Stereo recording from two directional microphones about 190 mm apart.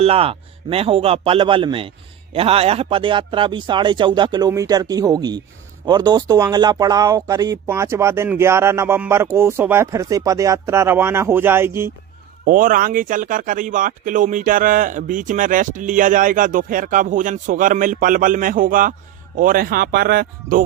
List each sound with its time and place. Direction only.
0.0 s speech: 30° right (ahead or behind); by 11.9 s 10° right (ahead or behind)
12.5 s speech: 45° right (ahead or behind)